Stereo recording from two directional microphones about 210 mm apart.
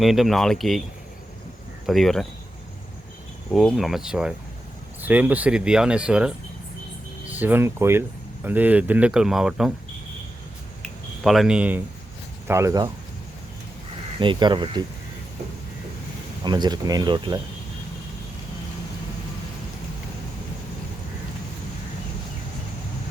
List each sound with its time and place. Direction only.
0.0 s speech: centre (ahead or behind)
1.9 s speech: centre (ahead or behind)
3.5 s speech: centre (ahead or behind)
10.8 s a sound: centre (ahead or behind)
12.5 s speech: 15° right (ahead or behind)
14.2 s speech: 20° right (ahead or behind)
16.4 s speech: 20° right (ahead or behind)